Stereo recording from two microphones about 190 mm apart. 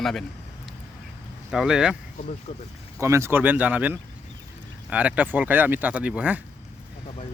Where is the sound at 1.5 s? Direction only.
5° right (ahead or behind).